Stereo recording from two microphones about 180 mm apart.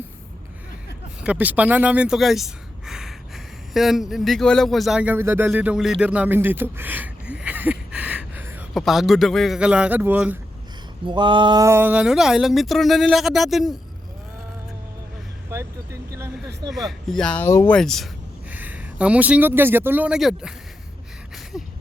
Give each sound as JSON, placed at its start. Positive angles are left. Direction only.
{"t": 1.2, "sound": "speech", "side_deg": -10}
{"t": 11.0, "sound": "speech", "side_deg": -25}
{"t": 15.4, "sound": "vehicle", "side_deg": -15}
{"t": 16.5, "sound": "speech", "side_deg": -70}
{"t": 16.7, "sound": "speech", "side_deg": 0}
{"t": 17.7, "sound": "speech", "side_deg": 0}
{"t": 18.5, "sound": "speech", "side_deg": -10}
{"t": 21.5, "sound": "a sound", "side_deg": 0}